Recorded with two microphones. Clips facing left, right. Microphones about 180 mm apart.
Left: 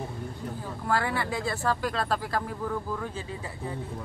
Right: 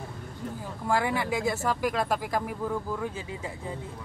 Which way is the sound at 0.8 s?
15° right (ahead or behind).